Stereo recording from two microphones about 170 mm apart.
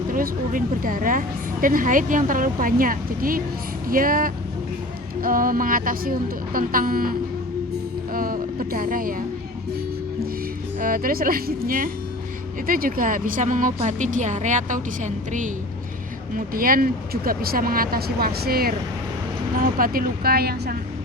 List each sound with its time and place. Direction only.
0.1 s a woman's voice: 55° right (ahead or behind)
10.8 s a woman's voice: 55° right (ahead or behind)